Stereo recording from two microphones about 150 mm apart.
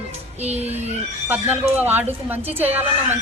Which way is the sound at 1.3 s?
15° right (ahead or behind).